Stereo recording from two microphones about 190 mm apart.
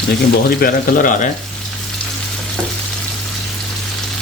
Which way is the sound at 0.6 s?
45° left (ahead or behind).